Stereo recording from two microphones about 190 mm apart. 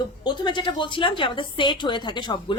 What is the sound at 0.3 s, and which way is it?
A woman's voice, 25° left (ahead or behind).